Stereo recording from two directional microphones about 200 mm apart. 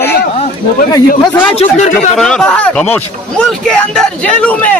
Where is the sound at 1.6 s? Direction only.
35° left (ahead or behind).